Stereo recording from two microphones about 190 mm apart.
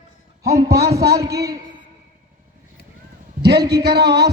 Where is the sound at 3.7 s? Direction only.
60° right (ahead or behind).